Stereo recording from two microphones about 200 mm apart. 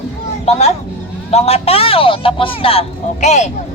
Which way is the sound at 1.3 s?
30° left (ahead or behind).